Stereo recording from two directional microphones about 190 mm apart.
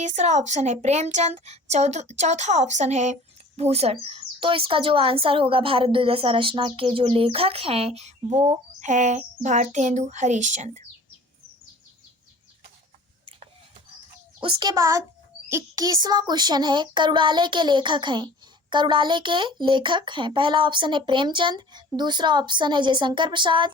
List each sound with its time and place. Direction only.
0.0 s speech: 35° right (ahead or behind)
14.4 s a child's voice: 20° right (ahead or behind)